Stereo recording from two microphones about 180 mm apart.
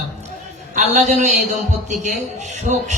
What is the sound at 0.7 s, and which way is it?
A man's voice, 40° right (ahead or behind).